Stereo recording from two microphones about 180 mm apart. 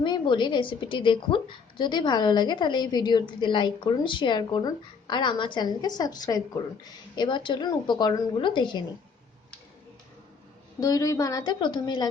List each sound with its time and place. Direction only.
0.0 s a woman's voice: 25° left (ahead or behind)
10.8 s a woman's voice: 20° left (ahead or behind)